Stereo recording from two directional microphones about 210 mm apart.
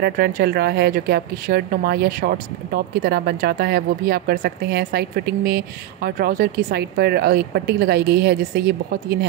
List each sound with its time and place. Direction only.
0.0 s a woman's voice: 45° right (ahead or behind)